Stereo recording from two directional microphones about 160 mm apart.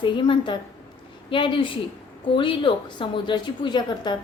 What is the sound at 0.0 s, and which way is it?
A woman's voice, 30° left (ahead or behind).